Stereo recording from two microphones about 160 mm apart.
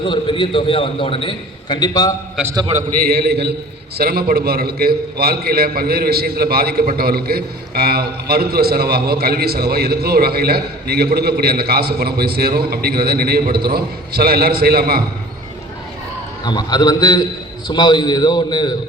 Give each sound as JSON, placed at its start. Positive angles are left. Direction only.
{"t": 0.0, "sound": "a man's voice", "side_deg": 30}
{"t": 3.0, "sound": "a man's voice", "side_deg": -75}
{"t": 3.9, "sound": "a man's voice", "side_deg": -75}
{"t": 16.5, "sound": "a man's voice", "side_deg": 25}